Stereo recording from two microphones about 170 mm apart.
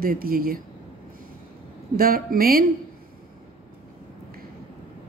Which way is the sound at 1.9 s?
60° right (ahead or behind).